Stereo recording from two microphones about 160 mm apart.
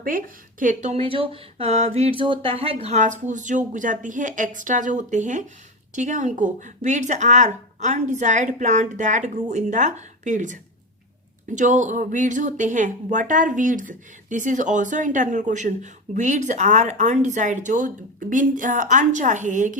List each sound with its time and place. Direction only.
0.0 s speech: 60° right (ahead or behind)